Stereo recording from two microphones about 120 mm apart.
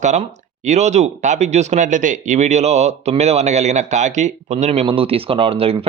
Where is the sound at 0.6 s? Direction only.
75° right (ahead or behind).